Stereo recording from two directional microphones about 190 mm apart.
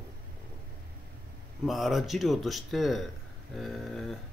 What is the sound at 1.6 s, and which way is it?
Speech, centre (ahead or behind).